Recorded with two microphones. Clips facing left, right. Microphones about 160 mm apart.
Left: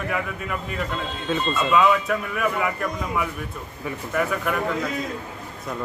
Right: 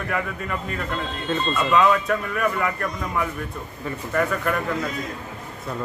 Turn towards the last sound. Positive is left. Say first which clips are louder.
# right 1 dB
turn(degrees=5)  # may be behind; listen again after turning